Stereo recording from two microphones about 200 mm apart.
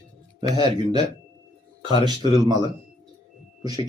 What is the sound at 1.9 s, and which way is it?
Speech, 20° right (ahead or behind).